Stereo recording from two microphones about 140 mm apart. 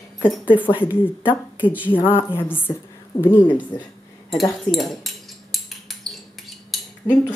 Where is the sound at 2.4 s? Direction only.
15° left (ahead or behind).